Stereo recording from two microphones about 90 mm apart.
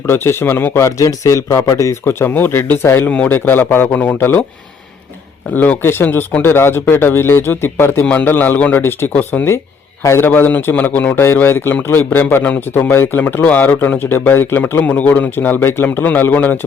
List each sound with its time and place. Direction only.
0.1 s a man's voice: 25° left (ahead or behind)
5.5 s a man's voice: 20° left (ahead or behind)